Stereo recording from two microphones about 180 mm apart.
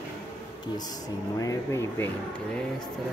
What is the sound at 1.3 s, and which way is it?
Speech, 15° left (ahead or behind).